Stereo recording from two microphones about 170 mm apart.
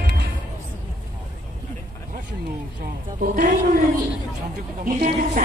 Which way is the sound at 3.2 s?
55° right (ahead or behind).